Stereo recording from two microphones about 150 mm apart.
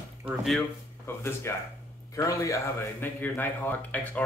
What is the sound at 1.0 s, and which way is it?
Speech, 15° left (ahead or behind).